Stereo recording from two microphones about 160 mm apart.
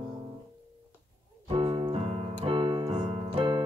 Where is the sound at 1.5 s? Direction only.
30° right (ahead or behind).